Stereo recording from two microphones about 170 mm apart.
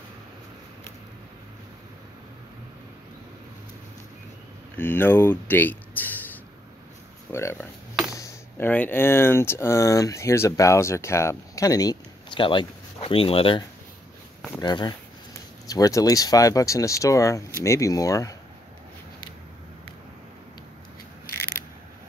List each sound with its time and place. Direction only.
4.7 s speech: 10° left (ahead or behind)
7.3 s speech: 15° left (ahead or behind)